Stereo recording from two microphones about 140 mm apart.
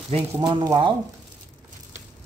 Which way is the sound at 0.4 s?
35° right (ahead or behind).